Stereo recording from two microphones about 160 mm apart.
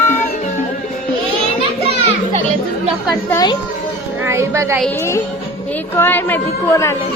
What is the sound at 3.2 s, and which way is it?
Speech, 20° left (ahead or behind).